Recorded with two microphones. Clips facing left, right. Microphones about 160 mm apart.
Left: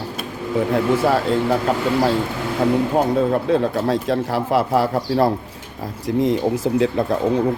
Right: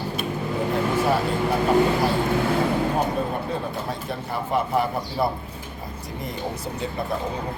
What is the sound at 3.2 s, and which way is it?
Speech, 85° left.